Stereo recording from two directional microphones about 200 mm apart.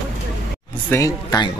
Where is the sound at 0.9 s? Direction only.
15° left (ahead or behind).